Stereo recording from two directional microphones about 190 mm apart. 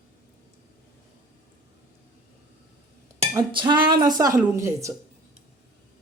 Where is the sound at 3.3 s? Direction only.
25° right (ahead or behind).